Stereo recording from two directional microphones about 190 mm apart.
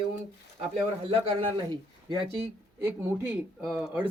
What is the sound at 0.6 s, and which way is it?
Speech, 30° right (ahead or behind).